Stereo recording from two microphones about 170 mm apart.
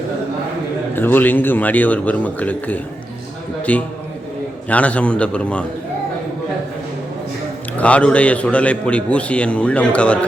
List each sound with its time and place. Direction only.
0.9 s a man's voice: 10° left (ahead or behind)
7.8 s a man's voice: 5° left (ahead or behind)